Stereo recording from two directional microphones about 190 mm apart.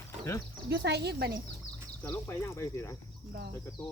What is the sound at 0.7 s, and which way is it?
Speech, 65° right (ahead or behind).